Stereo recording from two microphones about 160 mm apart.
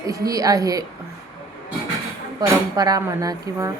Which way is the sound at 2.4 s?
25° right (ahead or behind).